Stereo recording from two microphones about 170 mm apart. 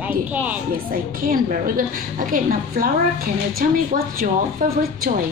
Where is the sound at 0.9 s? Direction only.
55° right (ahead or behind).